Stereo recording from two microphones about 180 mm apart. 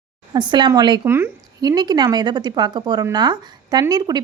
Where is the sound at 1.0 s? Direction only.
15° right (ahead or behind).